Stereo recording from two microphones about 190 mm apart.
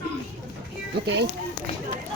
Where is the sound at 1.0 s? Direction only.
60° right (ahead or behind).